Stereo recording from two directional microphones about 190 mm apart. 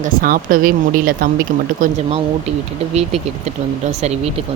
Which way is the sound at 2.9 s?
35° right (ahead or behind).